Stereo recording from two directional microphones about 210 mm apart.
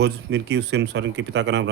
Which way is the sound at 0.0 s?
55° right (ahead or behind).